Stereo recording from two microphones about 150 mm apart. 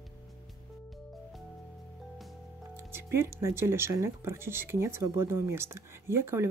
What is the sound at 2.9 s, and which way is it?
Speech, 15° right (ahead or behind).